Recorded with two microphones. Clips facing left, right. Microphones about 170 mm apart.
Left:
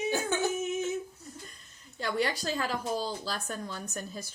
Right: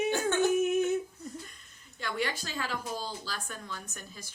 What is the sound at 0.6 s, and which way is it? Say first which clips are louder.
Female singing: right 5 dB; 60° right (ahead or behind).